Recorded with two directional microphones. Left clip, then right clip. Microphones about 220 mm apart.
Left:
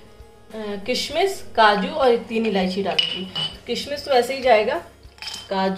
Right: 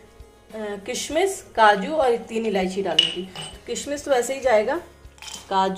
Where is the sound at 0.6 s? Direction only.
20° right (ahead or behind).